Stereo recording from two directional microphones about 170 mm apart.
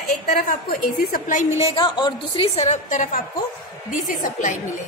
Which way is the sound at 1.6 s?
25° left (ahead or behind).